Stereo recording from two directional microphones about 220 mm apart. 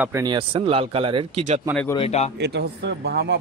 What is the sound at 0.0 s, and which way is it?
Speech, 15° right (ahead or behind).